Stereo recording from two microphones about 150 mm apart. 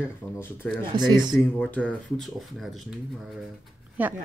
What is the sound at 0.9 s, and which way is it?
Speech, 30° right (ahead or behind).